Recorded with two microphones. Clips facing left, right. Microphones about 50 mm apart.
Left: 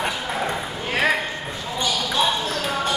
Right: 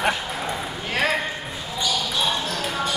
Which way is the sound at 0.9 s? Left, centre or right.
Centre.